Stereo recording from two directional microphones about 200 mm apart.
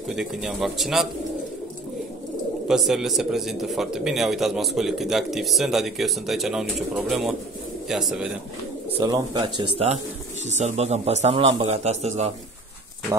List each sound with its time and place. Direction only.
0.1 s speech: centre (ahead or behind)
2.7 s speech: centre (ahead or behind)
9.0 s a man's voice: 20° right (ahead or behind)